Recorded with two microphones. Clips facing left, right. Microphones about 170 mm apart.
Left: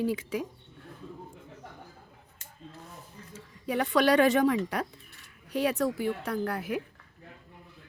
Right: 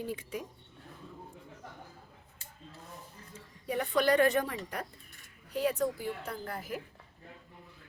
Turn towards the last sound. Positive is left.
turn(degrees=70)  # may be behind; listen again after turning